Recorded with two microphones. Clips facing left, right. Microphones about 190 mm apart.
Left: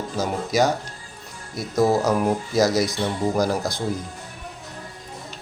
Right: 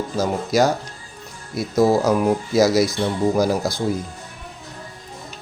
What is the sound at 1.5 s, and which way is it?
Speech, centre (ahead or behind).